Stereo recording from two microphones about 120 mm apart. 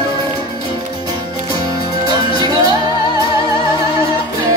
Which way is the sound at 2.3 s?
35° right (ahead or behind).